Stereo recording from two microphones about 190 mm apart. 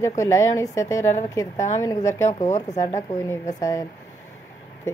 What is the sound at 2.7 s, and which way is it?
A woman's voice, 15° left (ahead or behind).